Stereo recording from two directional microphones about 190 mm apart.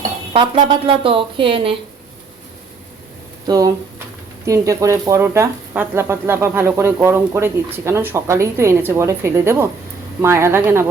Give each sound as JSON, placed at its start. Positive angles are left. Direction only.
{"t": 0.3, "sound": "speech", "side_deg": -25}
{"t": 3.4, "sound": "speech", "side_deg": -20}